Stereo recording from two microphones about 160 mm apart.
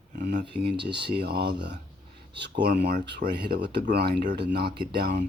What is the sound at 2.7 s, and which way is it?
Speech, 75° right (ahead or behind).